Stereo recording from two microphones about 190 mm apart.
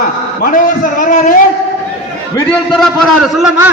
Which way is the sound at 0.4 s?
45° left (ahead or behind).